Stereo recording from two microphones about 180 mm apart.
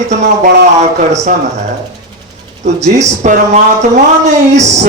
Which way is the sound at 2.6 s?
40° right (ahead or behind).